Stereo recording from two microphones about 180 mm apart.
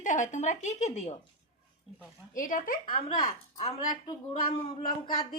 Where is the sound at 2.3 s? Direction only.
50° left (ahead or behind).